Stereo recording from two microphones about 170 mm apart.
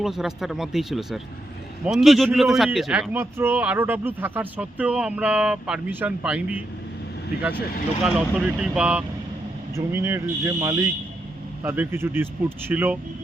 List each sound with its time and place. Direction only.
0.0 s speech: centre (ahead or behind)
8.0 s speech: 5° right (ahead or behind)